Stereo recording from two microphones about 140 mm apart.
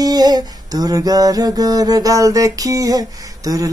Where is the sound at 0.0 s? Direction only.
30° right (ahead or behind).